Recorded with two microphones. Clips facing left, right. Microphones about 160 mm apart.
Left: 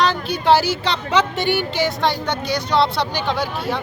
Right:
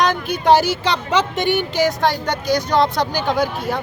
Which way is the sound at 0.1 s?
45° right (ahead or behind).